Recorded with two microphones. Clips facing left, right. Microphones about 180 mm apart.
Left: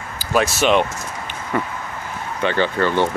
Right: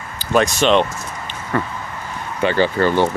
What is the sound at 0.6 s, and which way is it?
Speech, 10° left (ahead or behind).